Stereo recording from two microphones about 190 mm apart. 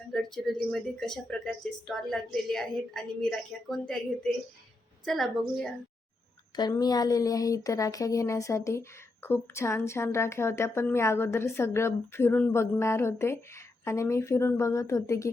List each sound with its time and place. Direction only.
0.1 s a woman's voice: centre (ahead or behind)
6.6 s speech: 20° left (ahead or behind)